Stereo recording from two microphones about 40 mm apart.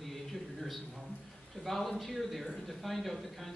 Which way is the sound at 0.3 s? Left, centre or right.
Centre.